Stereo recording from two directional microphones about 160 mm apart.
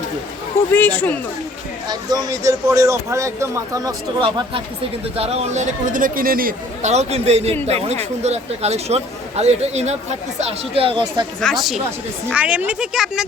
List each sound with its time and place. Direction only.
0.7 s speech: 10° left (ahead or behind)
1.9 s speech: 25° right (ahead or behind)
4.2 s speech: 30° right (ahead or behind); by 6.9 s 60° right (ahead or behind)
6.9 s speech: 40° right (ahead or behind)
10.8 s speech: 30° right (ahead or behind)
11.3 s speech: centre (ahead or behind)